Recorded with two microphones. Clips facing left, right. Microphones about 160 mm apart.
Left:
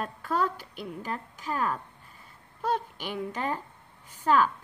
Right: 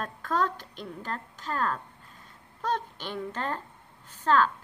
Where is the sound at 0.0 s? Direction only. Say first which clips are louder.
Even; 10° left (ahead or behind).